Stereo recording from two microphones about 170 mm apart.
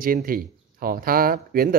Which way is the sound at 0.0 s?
60° right (ahead or behind).